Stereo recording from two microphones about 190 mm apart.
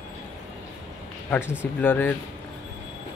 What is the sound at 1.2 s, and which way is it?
Speech, 10° left (ahead or behind).